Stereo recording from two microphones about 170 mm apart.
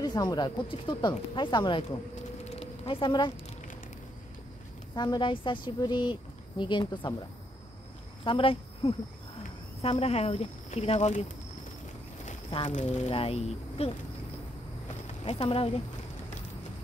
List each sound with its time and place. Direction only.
0.0 s speech: 25° left (ahead or behind)
2.4 s a sound: 35° left (ahead or behind)
4.9 s speech: 25° left (ahead or behind); by 11.2 s 40° left (ahead or behind)
12.6 s speech: 40° left (ahead or behind)
15.2 s speech: 35° left (ahead or behind)